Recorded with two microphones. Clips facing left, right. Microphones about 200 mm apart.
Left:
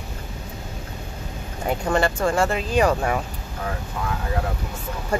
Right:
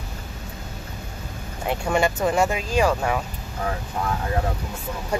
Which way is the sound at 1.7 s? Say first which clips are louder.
Even; 10° right (ahead or behind).